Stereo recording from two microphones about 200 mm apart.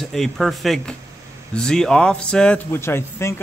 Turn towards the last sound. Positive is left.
turn(degrees=10)  # may be behind; listen again after turning